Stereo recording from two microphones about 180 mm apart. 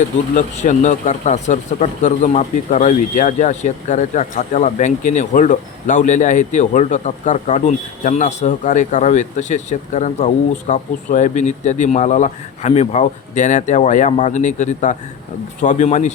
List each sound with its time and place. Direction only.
0.3 s speech: 40° left (ahead or behind)